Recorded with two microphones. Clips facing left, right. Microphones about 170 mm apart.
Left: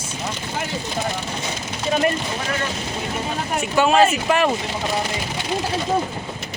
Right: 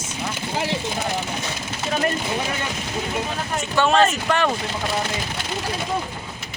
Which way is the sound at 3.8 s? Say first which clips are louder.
Left 2 dB; 5° left (ahead or behind).